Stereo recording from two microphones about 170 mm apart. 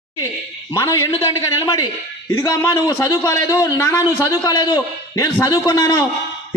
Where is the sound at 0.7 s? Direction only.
15° left (ahead or behind).